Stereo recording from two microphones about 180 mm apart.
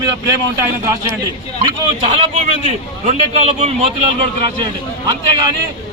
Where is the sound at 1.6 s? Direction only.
35° right (ahead or behind).